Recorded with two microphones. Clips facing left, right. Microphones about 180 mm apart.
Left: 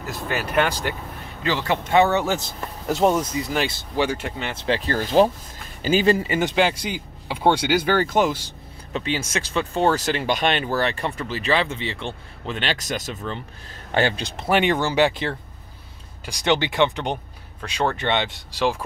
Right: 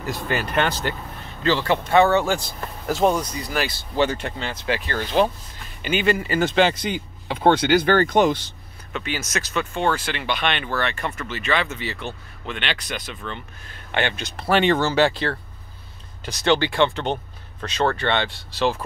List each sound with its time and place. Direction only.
0.0 s speech: centre (ahead or behind); by 3.7 s 25° left (ahead or behind)
3.9 s speech: 10° left (ahead or behind)
4.6 s speech: 30° left (ahead or behind)
6.2 s speech: 20° left (ahead or behind)
6.5 s speech: 10° left (ahead or behind)
8.9 s speech: 30° left (ahead or behind)
14.5 s speech: 15° left (ahead or behind)